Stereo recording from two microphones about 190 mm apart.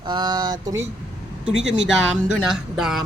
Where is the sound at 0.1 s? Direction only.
20° right (ahead or behind).